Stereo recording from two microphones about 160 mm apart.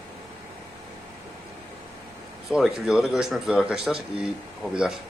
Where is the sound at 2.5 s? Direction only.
5° right (ahead or behind).